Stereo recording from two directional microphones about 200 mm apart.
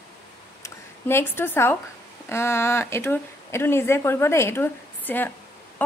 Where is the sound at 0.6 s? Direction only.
10° left (ahead or behind).